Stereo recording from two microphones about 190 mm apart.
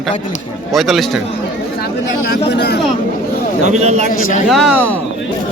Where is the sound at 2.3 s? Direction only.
55° left (ahead or behind).